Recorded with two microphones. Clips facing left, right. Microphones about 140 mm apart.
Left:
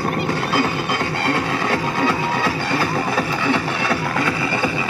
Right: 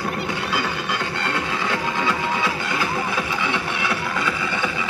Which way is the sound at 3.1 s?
40° left (ahead or behind).